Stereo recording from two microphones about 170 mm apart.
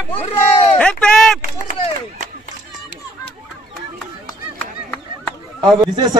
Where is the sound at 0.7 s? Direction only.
5° left (ahead or behind).